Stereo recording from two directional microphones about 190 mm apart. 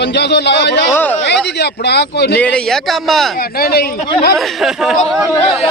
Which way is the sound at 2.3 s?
5° left (ahead or behind).